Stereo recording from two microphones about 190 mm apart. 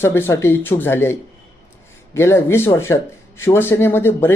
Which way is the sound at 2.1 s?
15° left (ahead or behind).